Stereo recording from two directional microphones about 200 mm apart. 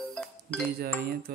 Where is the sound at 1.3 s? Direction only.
50° right (ahead or behind).